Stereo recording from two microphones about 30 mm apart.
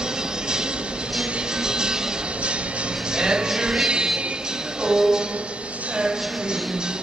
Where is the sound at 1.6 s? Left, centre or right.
Right.